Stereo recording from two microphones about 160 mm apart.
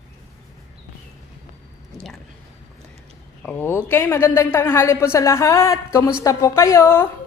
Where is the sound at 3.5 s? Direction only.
15° left (ahead or behind).